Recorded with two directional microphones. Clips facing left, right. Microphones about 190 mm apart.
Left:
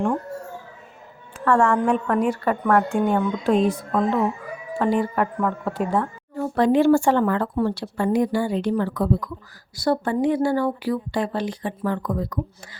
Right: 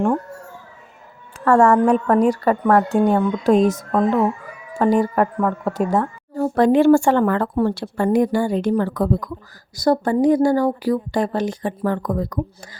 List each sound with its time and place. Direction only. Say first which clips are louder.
1.5 s a woman's voice: right 5 dB; 40° right (ahead or behind)